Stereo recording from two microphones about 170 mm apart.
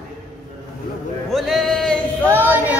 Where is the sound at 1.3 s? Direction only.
Centre (ahead or behind).